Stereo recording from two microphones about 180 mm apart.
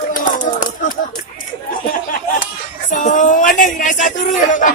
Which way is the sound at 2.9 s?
45° left (ahead or behind).